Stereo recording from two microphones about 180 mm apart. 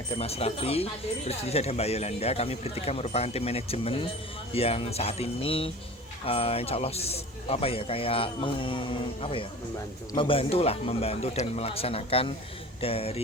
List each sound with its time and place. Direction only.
0.2 s a man's voice: 35° left (ahead or behind)